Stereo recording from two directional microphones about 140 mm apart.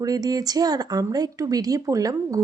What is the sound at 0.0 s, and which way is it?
Speech, 25° right (ahead or behind).